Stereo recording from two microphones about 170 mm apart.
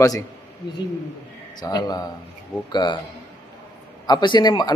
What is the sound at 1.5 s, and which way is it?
Speech, 25° left (ahead or behind).